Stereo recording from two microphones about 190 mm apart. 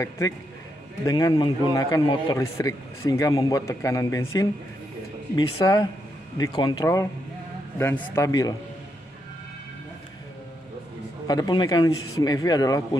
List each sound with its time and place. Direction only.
1.0 s a man's voice: 20° left (ahead or behind)
5.3 s a man's voice: 20° left (ahead or behind)
11.2 s a man's voice: 20° left (ahead or behind)